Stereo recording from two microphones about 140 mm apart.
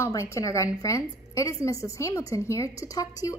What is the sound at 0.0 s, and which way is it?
A woman's voice, 20° left (ahead or behind).